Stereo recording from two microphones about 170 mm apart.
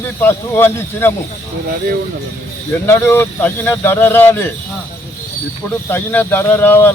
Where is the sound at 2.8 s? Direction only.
15° left (ahead or behind).